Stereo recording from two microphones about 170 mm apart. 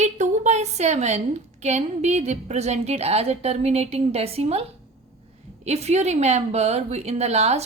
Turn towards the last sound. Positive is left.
turn(degrees=-40)  # may be behind; listen again after turning